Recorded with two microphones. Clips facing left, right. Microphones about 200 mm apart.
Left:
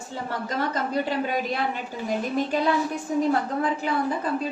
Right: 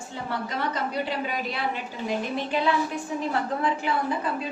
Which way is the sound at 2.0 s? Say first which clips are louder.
Left 3 dB; 45° left (ahead or behind).